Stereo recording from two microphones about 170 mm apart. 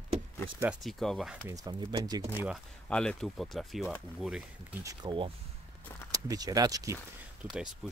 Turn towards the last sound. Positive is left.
turn(degrees=-5)  # may be behind; listen again after turning